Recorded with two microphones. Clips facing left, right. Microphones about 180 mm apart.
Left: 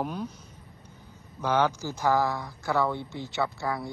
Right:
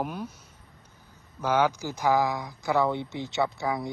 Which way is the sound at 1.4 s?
10° right (ahead or behind).